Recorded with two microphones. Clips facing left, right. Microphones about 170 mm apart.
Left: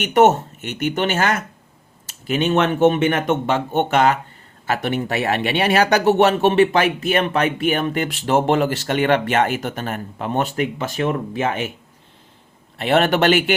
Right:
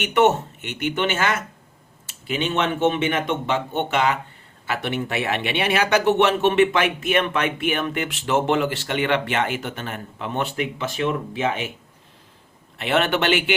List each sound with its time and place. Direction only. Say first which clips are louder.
0.0 s speech: left 4 dB; 40° left (ahead or behind)
12.8 s speech: left 5 dB; 40° left (ahead or behind)